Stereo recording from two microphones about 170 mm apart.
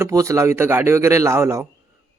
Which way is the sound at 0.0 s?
20° right (ahead or behind).